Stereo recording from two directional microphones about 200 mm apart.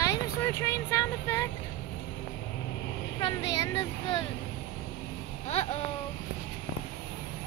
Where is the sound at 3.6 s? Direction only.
20° left (ahead or behind).